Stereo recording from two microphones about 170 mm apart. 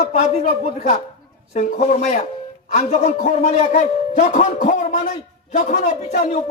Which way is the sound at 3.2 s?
60° left (ahead or behind).